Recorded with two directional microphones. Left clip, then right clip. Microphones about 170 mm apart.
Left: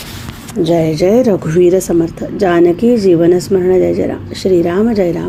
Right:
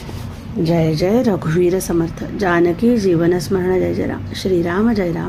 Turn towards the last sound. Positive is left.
turn(degrees=15)  # may be behind; listen again after turning